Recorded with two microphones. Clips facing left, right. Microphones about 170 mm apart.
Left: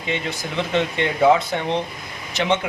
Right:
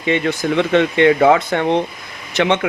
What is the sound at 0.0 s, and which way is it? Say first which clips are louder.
Speech: right 9 dB; 65° right (ahead or behind).